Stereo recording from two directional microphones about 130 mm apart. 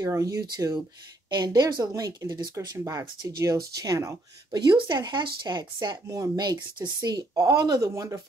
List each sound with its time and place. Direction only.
0.0 s speech: 25° right (ahead or behind)